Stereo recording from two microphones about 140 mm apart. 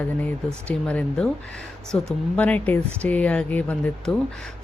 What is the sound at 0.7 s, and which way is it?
A woman's voice, 5° left (ahead or behind).